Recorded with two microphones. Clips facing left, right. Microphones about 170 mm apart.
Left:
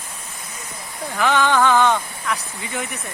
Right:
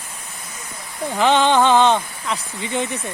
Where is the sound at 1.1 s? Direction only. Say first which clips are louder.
Right 3 dB; 20° right (ahead or behind).